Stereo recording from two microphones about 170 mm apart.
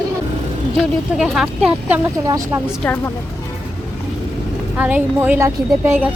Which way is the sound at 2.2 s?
20° right (ahead or behind).